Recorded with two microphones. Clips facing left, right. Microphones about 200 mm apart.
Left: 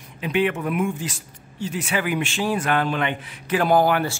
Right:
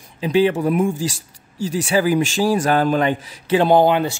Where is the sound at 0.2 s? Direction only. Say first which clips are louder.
Right 6 dB; 30° right (ahead or behind).